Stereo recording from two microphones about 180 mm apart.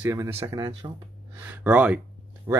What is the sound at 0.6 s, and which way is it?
Speech, 30° right (ahead or behind).